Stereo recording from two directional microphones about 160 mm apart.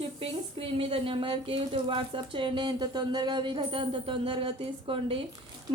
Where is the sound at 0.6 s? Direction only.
35° right (ahead or behind).